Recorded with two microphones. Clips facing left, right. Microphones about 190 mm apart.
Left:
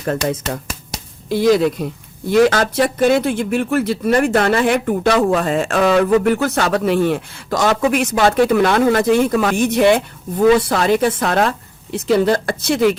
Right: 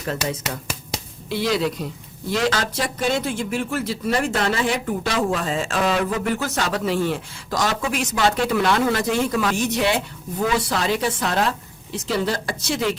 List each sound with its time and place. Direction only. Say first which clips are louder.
0.0 s speech: left 6 dB; 50° left (ahead or behind)